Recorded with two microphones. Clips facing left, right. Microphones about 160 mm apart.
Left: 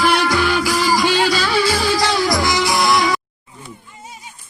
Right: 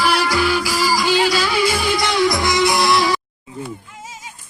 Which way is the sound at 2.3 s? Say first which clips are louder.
Even; 25° right (ahead or behind).